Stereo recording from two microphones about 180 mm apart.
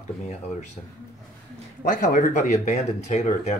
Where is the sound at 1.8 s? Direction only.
45° left (ahead or behind).